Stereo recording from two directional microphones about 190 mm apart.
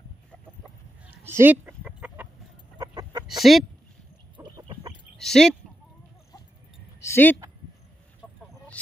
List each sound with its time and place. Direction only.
1.2 s chicken: 10° right (ahead or behind)
2.8 s chicken: 20° right (ahead or behind)
3.3 s speech: centre (ahead or behind)
4.4 s fowl: 20° right (ahead or behind)
5.1 s speech: centre (ahead or behind)
7.0 s a sound: 10° left (ahead or behind)
8.2 s chicken: 5° left (ahead or behind)